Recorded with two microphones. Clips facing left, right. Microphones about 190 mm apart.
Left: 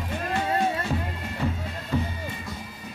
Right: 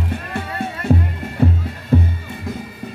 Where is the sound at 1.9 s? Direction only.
55° right (ahead or behind).